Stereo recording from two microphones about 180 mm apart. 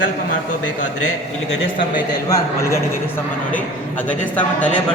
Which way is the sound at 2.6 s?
15° left (ahead or behind).